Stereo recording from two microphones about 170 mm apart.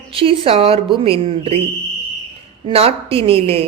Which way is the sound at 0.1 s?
30° right (ahead or behind).